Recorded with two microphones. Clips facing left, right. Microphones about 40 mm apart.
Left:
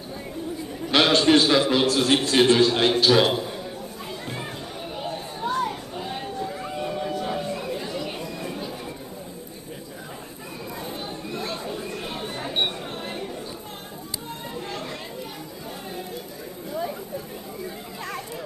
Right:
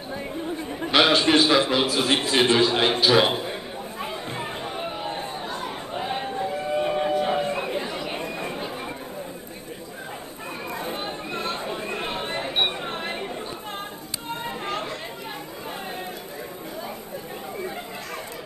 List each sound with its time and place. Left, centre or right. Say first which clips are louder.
0.9 s a sound: even; centre
1.7 s a man's voice: left 2 dB; centre
3.3 s a sound: left 1 dB; right
4.0 s chatter: right 3 dB; right
10.8 s chatter: right 2 dB; right
14.5 s chatter: right 2 dB; right